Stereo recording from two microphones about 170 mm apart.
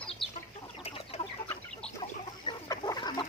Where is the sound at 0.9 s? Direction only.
35° left (ahead or behind).